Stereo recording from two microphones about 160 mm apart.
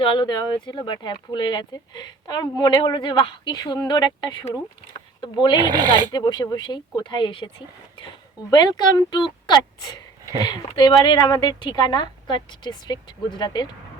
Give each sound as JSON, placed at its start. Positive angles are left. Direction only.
{"t": 0.0, "sound": "speech", "side_deg": 30}
{"t": 5.6, "sound": "speech", "side_deg": -25}
{"t": 6.1, "sound": "speech", "side_deg": 25}